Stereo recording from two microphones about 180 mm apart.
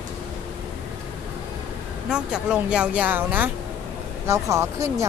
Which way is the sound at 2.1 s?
5° right (ahead or behind).